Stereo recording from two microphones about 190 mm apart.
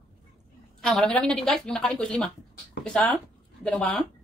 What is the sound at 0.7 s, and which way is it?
A woman's voice, centre (ahead or behind).